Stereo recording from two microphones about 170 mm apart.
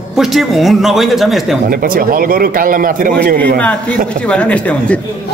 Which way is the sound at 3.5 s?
5° left (ahead or behind).